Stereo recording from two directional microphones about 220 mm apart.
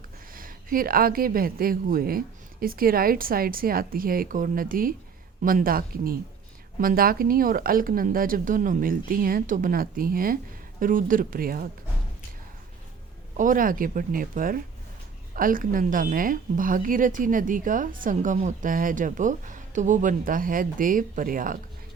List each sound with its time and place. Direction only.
0.3 s speech: 40° right (ahead or behind)
13.3 s speech: 35° right (ahead or behind)